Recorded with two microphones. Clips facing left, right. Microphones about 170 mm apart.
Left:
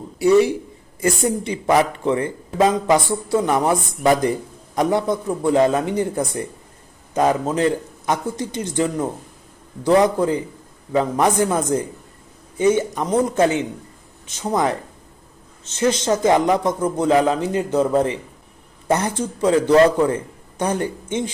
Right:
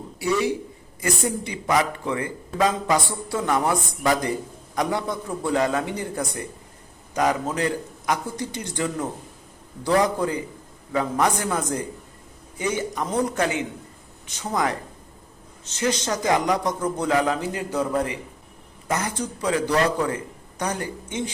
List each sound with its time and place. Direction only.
0.2 s speech: 25° left (ahead or behind)